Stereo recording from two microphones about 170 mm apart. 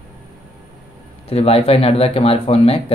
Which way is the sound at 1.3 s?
35° left (ahead or behind).